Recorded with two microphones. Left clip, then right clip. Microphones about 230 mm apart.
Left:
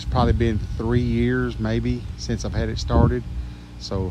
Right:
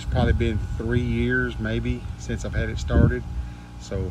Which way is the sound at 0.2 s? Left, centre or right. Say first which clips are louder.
Left 3 dB; centre.